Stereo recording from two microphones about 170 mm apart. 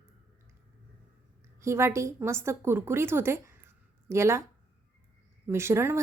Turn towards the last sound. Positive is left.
turn(degrees=-15)  # may be behind; listen again after turning